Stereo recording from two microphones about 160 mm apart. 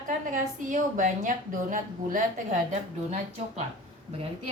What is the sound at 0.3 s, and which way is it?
A woman's voice, 55° right (ahead or behind).